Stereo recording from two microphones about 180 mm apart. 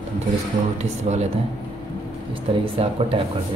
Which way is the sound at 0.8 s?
40° right (ahead or behind).